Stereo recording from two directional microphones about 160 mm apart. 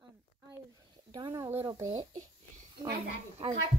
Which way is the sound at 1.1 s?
25° right (ahead or behind).